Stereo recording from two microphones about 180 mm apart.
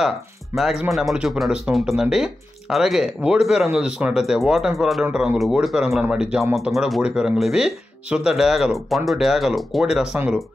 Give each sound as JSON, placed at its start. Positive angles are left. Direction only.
{"t": 0.6, "sound": "speech", "side_deg": 0}